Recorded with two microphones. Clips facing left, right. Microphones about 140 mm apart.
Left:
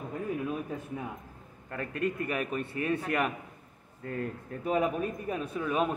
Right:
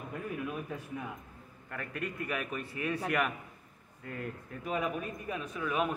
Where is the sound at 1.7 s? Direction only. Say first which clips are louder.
Left 7 dB; 30° left (ahead or behind).